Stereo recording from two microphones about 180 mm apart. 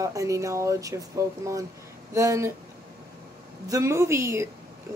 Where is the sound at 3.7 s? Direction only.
15° right (ahead or behind).